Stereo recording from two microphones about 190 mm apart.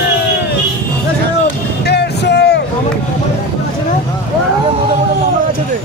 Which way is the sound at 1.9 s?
60° left (ahead or behind).